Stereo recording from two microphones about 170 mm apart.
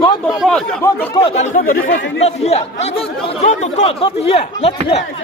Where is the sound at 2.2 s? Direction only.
40° left (ahead or behind).